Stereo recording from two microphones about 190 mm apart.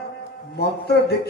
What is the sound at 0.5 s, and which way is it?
Speech, 60° left (ahead or behind).